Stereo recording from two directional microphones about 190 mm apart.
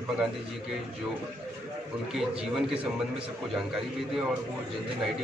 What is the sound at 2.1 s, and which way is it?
Speech, 5° right (ahead or behind).